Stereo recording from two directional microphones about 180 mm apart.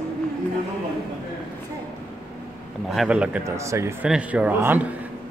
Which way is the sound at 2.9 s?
5° right (ahead or behind).